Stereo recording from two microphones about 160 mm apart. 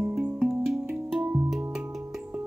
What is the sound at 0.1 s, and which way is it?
Music, centre (ahead or behind).